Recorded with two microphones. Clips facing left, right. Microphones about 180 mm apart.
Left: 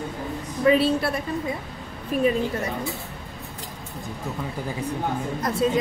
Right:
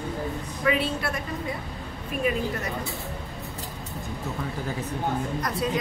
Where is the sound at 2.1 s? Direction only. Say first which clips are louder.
Left 6 dB; 35° left (ahead or behind).